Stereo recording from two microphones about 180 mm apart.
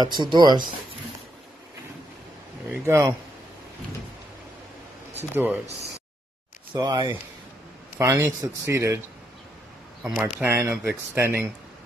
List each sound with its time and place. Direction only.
0.0 s speech: 25° right (ahead or behind)
2.7 s speech: 15° right (ahead or behind)
5.3 s speech: 10° right (ahead or behind)
6.7 s speech: 20° right (ahead or behind)
10.3 s speech: 15° right (ahead or behind)